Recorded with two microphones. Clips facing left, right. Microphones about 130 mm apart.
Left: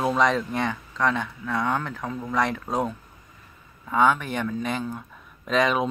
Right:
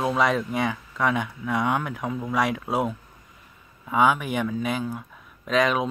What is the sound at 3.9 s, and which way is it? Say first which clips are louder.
Speech: even; 10° right (ahead or behind).